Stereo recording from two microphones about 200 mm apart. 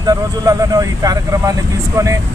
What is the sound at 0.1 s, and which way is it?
Speech, 15° right (ahead or behind).